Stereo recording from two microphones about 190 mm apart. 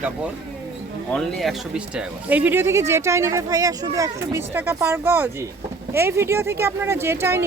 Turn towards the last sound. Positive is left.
turn(degrees=-15)  # may be behind; listen again after turning